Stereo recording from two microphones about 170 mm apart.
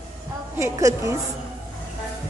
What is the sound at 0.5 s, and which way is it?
Speech, 15° right (ahead or behind).